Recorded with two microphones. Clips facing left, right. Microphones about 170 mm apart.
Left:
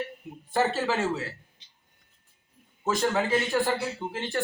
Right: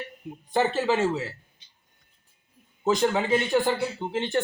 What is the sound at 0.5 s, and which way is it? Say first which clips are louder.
Speech: right 2 dB; 20° right (ahead or behind).